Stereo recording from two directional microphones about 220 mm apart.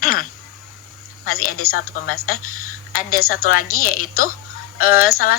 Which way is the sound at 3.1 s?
75° left (ahead or behind).